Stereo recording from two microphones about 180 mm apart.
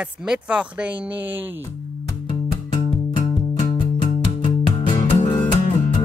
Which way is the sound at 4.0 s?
25° left (ahead or behind).